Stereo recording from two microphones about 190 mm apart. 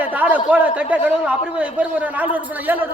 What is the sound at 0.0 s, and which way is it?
A man's voice, 10° right (ahead or behind).